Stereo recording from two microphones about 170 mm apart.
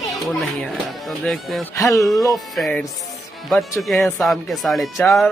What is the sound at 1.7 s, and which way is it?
Speech, 20° left (ahead or behind).